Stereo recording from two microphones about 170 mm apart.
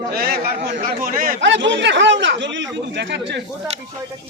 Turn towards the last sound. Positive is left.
turn(degrees=-90)